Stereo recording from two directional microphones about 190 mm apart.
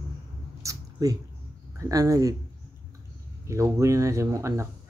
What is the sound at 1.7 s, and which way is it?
Speech, 15° right (ahead or behind).